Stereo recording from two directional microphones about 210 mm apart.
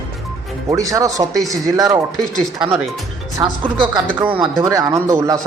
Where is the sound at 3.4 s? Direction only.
20° right (ahead or behind).